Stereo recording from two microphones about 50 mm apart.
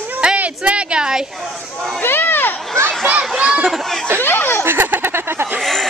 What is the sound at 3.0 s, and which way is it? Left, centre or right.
Speech, right.